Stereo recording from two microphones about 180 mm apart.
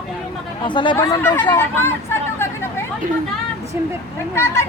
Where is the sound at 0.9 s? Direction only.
15° left (ahead or behind).